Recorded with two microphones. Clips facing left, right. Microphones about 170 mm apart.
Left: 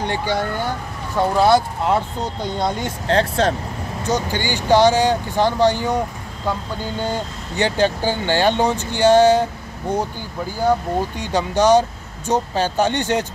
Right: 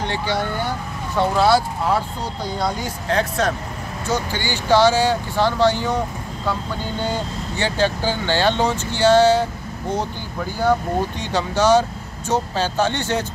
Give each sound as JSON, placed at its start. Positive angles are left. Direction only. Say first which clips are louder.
{"t": 0.0, "sound": "speech", "louder": "left 1 dB", "side_deg": 15}
{"t": 4.0, "sound": "speech", "louder": "left 2 dB", "side_deg": 15}
{"t": 7.5, "sound": "speech", "louder": "left 3 dB", "side_deg": 15}
{"t": 11.1, "sound": "speech", "louder": "left 2 dB", "side_deg": 15}